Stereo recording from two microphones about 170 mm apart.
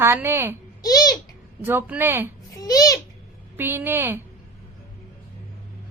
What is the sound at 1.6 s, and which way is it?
Speech, 10° right (ahead or behind).